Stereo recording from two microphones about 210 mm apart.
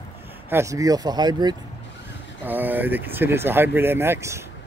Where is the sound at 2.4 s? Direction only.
10° right (ahead or behind).